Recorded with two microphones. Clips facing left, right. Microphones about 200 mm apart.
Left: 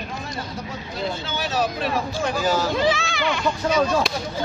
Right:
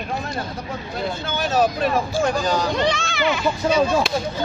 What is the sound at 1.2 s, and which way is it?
Speech, 50° right (ahead or behind).